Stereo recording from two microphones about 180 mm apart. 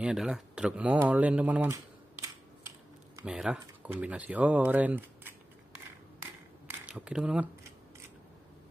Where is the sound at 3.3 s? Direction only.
5° right (ahead or behind).